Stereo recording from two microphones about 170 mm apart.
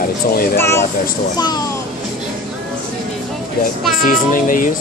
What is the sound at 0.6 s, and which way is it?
Speech, 15° left (ahead or behind).